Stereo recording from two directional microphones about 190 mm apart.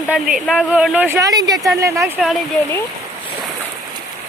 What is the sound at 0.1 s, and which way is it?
Speech, 5° right (ahead or behind).